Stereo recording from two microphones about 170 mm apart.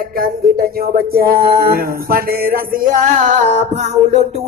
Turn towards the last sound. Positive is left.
turn(degrees=-40)  # may be behind; listen again after turning